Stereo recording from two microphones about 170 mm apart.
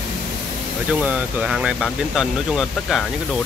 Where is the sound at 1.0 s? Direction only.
5° right (ahead or behind).